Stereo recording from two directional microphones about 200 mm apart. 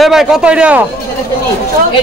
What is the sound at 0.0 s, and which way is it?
Speech, centre (ahead or behind).